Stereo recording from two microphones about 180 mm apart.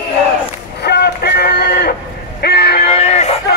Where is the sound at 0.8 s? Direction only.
65° left (ahead or behind).